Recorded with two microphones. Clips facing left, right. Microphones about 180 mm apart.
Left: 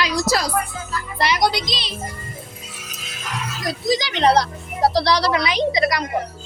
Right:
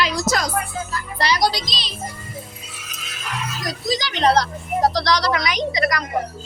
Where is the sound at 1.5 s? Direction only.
60° left (ahead or behind).